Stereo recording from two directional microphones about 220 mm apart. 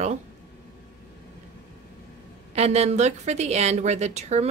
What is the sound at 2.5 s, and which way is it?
A woman's voice, 30° right (ahead or behind).